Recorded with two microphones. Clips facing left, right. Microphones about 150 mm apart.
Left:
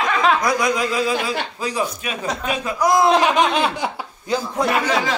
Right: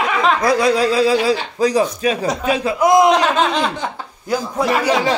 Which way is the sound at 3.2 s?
15° left (ahead or behind).